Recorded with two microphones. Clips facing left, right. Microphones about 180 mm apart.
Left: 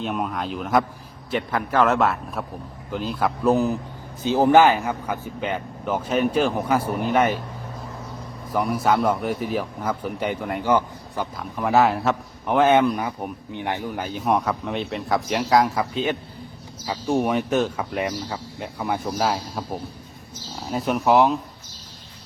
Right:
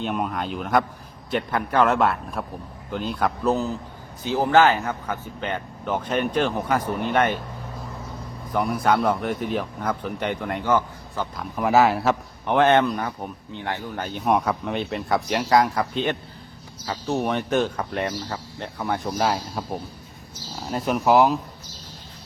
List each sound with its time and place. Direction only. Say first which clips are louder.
0.0 s speech: even; centre (ahead or behind)
3.5 s speech: left 4 dB; 15° left (ahead or behind)
8.5 s speech: even; 5° left (ahead or behind)
11.3 s speech: right 1 dB; centre (ahead or behind)